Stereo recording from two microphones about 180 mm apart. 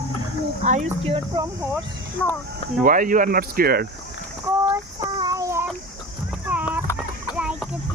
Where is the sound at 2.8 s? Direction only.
50° right (ahead or behind).